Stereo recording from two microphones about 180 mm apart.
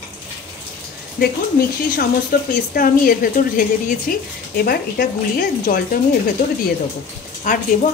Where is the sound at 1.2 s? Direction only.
55° left (ahead or behind).